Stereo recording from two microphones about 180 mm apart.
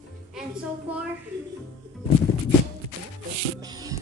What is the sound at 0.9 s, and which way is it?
Speech, 5° right (ahead or behind).